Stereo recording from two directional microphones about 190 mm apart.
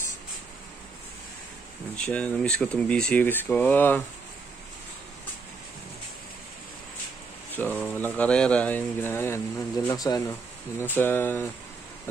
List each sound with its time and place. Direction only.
2.0 s speech: 5° left (ahead or behind)
7.5 s speech: 10° left (ahead or behind)